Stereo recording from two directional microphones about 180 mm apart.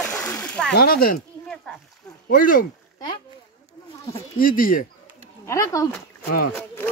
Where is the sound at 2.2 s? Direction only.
50° left (ahead or behind).